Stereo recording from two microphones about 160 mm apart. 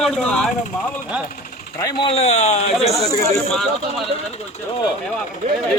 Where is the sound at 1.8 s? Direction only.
35° left (ahead or behind).